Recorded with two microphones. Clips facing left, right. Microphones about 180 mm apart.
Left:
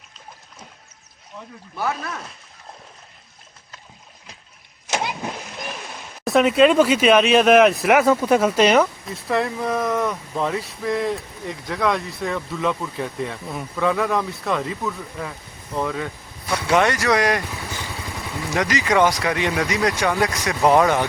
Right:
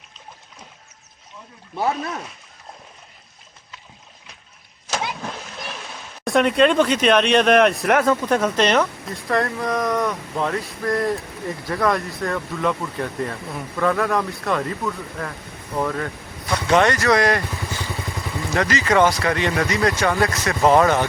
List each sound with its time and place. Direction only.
1.7 s speech: 25° right (ahead or behind)
4.9 s speech: 15° left (ahead or behind)
18.5 s speech: 10° left (ahead or behind)